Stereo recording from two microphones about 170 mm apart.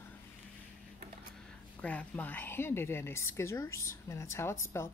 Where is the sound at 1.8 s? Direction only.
10° left (ahead or behind).